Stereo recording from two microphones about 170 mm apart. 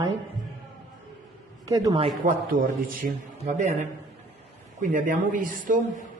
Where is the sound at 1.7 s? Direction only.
20° right (ahead or behind).